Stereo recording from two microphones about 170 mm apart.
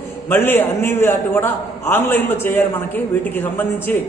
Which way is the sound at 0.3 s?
10° left (ahead or behind).